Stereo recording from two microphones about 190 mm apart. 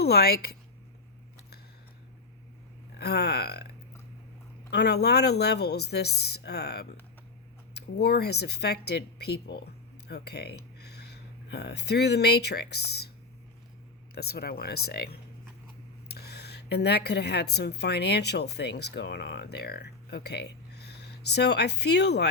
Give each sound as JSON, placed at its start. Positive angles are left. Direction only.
{"t": 0.0, "sound": "speech", "side_deg": 55}
{"t": 3.0, "sound": "speech", "side_deg": 60}
{"t": 4.7, "sound": "speech", "side_deg": 60}
{"t": 14.2, "sound": "a woman's voice", "side_deg": 55}